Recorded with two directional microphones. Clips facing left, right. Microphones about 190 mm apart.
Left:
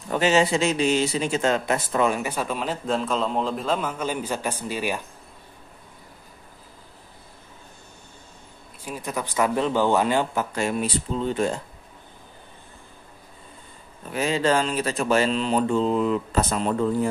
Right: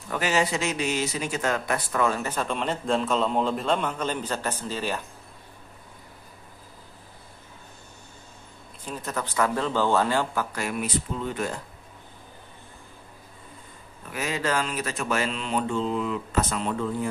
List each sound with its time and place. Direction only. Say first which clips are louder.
0.1 s speech: left 5 dB; 25° left (ahead or behind)
8.8 s speech: left 2 dB; 10° left (ahead or behind); by 11.6 s 30° left (ahead or behind)
14.1 s speech: left 5 dB; 30° left (ahead or behind)